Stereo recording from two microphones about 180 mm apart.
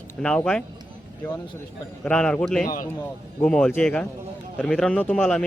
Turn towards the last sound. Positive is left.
turn(degrees=5)  # may be behind; listen again after turning